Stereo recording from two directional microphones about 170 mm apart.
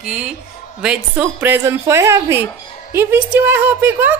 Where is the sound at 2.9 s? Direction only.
15° right (ahead or behind).